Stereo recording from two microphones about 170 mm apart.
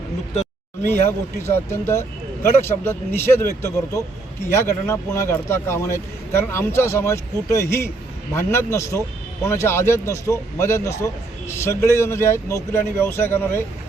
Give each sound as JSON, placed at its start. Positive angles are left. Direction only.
{"t": 1.4, "sound": "a man's voice", "side_deg": 15}
{"t": 4.5, "sound": "a man's voice", "side_deg": 15}